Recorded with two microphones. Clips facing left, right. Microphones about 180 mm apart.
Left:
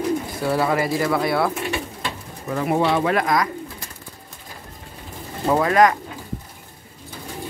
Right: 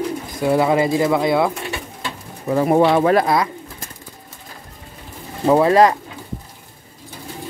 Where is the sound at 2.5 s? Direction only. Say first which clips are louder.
Right 6 dB; 35° right (ahead or behind).